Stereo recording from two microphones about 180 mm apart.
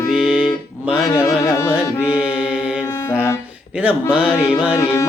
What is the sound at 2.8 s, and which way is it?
Music, 15° left (ahead or behind).